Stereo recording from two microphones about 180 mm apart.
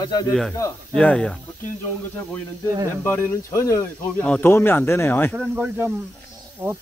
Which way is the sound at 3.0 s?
15° left (ahead or behind).